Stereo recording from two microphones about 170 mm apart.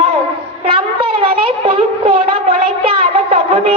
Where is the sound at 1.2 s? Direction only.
35° right (ahead or behind).